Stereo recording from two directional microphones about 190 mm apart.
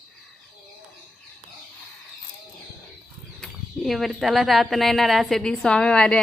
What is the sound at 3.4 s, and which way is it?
Speech, centre (ahead or behind).